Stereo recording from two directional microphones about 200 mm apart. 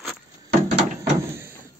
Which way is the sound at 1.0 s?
15° right (ahead or behind).